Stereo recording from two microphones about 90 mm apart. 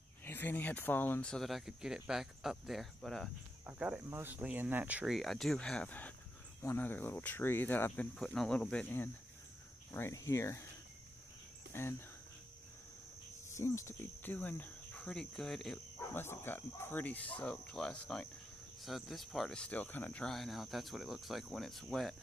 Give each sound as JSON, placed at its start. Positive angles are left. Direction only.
{"t": 0.2, "sound": "speech", "side_deg": 25}
{"t": 1.2, "sound": "speech", "side_deg": 5}
{"t": 3.6, "sound": "speech", "side_deg": -15}
{"t": 4.1, "sound": "speech", "side_deg": -25}
{"t": 5.0, "sound": "speech", "side_deg": 0}
{"t": 5.9, "sound": "cricket", "side_deg": 20}
{"t": 8.3, "sound": "speech", "side_deg": 10}
{"t": 11.7, "sound": "cricket", "side_deg": 30}
{"t": 13.6, "sound": "cricket", "side_deg": 30}
{"t": 16.1, "sound": "speech", "side_deg": 25}
{"t": 18.8, "sound": "speech", "side_deg": 0}
{"t": 19.8, "sound": "cricket", "side_deg": 20}
{"t": 20.2, "sound": "speech", "side_deg": 0}